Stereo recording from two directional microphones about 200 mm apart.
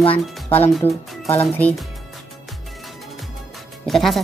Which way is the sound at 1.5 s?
5° left (ahead or behind).